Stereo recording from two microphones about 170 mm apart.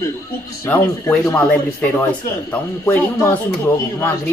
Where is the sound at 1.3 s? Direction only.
15° left (ahead or behind).